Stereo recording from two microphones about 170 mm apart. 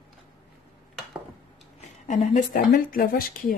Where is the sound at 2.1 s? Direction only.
45° left (ahead or behind).